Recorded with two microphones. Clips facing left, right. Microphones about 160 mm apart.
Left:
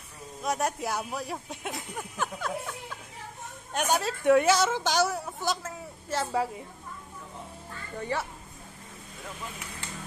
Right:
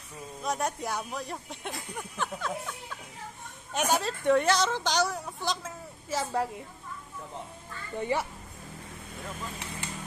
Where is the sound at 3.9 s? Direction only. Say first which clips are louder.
Left 3 dB; 5° left (ahead or behind).